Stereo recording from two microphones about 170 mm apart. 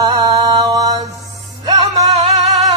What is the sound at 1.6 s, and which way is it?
Music, 35° right (ahead or behind).